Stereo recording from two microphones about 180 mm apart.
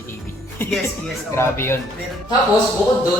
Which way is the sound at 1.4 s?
15° left (ahead or behind).